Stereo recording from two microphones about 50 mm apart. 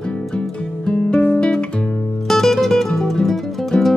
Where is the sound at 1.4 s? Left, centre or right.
Centre.